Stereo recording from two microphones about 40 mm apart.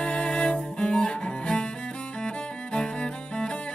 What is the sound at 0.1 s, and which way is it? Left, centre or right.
Music, left.